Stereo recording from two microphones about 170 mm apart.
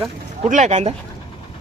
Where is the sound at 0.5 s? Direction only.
45° right (ahead or behind).